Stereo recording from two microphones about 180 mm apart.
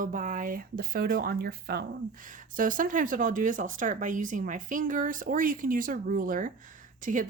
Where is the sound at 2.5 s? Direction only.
50° right (ahead or behind).